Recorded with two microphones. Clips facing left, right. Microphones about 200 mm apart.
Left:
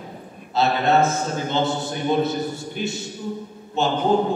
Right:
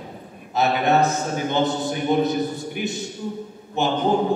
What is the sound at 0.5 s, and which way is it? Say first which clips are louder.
A man's voice: even; 15° right (ahead or behind).